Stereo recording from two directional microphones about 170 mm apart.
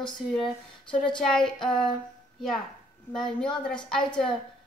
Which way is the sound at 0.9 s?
30° left (ahead or behind).